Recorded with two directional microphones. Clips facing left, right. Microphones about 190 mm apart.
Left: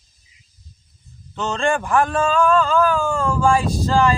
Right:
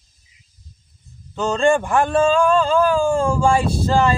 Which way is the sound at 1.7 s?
30° right (ahead or behind).